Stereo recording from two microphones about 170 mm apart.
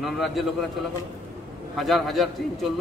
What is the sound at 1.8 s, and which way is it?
Speech, centre (ahead or behind).